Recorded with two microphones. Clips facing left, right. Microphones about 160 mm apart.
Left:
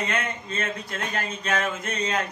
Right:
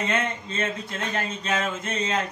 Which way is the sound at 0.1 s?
25° right (ahead or behind).